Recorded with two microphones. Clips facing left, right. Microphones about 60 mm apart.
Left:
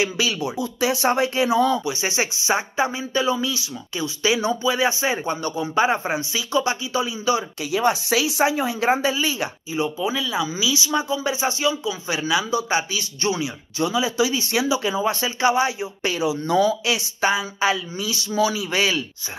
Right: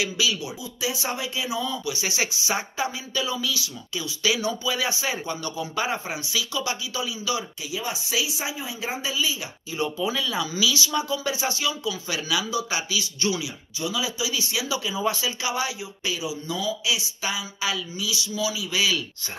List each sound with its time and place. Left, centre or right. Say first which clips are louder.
0.0 s speech: left 4 dB; left
1.9 s speech: left 4 dB; left
7.7 s speech: left 9 dB; left
9.8 s speech: left 3 dB; centre; by 14.7 s left
15.2 s speech: left 8 dB; left
16.0 s speech: left 7 dB; left